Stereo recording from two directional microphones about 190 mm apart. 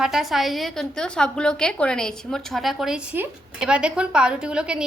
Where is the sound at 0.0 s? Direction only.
Centre (ahead or behind).